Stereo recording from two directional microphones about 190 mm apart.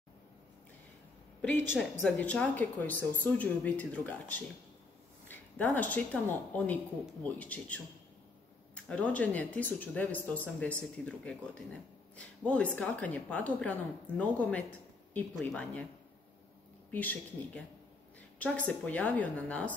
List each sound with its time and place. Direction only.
1.8 s speech: 5° left (ahead or behind)
16.9 s speech: 10° left (ahead or behind)